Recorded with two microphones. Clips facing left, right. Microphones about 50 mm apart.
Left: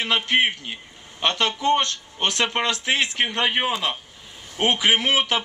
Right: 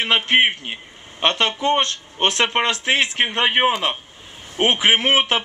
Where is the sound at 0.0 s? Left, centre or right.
Right.